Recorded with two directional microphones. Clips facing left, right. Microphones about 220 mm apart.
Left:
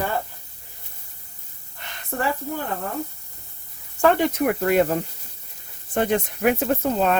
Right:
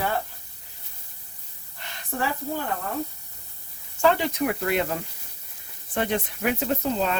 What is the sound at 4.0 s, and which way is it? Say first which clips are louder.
Speech: left 3 dB; 55° left (ahead or behind).